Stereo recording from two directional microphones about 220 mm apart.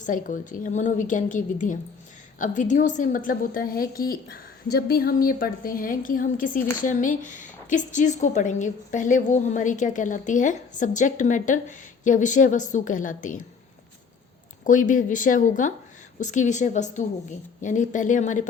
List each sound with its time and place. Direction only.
0.0 s a woman's voice: 35° left (ahead or behind)
14.6 s a woman's voice: 35° left (ahead or behind)